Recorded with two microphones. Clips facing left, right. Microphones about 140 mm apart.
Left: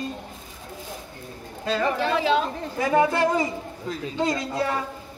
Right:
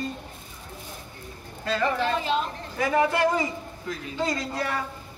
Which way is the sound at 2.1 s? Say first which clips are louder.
Left 4 dB; 90° left.